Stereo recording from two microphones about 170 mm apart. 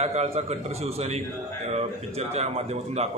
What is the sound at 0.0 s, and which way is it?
Speech, 40° right (ahead or behind).